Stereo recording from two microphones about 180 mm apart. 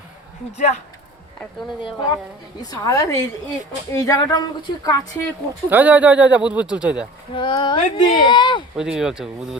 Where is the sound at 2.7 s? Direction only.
20° left (ahead or behind).